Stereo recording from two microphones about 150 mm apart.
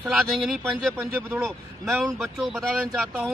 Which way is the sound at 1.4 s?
Centre (ahead or behind).